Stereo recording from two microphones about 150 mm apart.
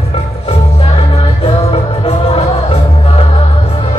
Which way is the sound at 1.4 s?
45° left (ahead or behind).